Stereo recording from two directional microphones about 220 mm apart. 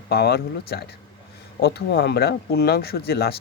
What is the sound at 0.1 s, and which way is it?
Speech, 45° left (ahead or behind).